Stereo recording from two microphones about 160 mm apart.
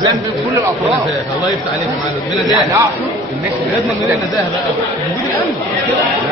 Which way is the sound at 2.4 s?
20° right (ahead or behind).